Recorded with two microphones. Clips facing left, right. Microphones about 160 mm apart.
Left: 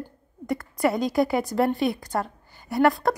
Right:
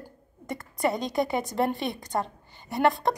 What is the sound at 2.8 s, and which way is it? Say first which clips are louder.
Speech: left 3 dB; centre (ahead or behind).